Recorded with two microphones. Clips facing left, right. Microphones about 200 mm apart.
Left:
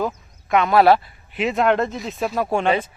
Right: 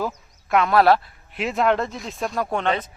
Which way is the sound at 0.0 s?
Centre (ahead or behind).